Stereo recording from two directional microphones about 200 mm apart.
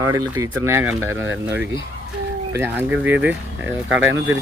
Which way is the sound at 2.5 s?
10° right (ahead or behind).